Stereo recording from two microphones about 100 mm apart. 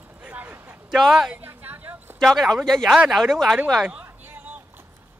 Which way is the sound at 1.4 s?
20° right (ahead or behind).